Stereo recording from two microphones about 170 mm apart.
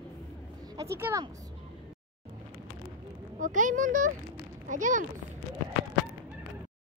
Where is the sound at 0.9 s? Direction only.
15° right (ahead or behind).